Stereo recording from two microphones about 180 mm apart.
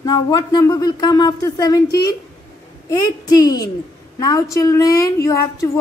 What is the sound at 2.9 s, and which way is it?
A woman's voice, 20° left (ahead or behind).